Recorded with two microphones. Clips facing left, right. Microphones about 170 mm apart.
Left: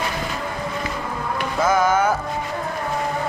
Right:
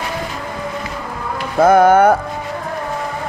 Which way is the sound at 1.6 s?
60° right (ahead or behind).